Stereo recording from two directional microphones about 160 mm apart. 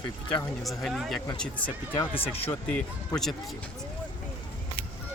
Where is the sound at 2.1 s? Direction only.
35° left (ahead or behind).